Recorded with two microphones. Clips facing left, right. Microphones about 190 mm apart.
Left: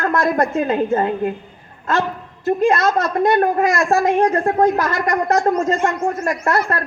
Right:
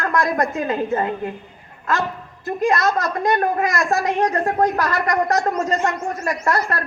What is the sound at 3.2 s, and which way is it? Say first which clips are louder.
A woman's voice: left 4 dB; 30° left (ahead or behind).